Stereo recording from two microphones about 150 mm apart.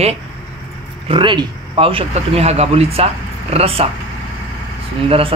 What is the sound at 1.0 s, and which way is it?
Speech, 35° right (ahead or behind).